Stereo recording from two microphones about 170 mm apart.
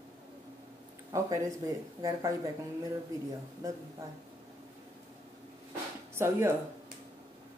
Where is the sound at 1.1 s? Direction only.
20° right (ahead or behind).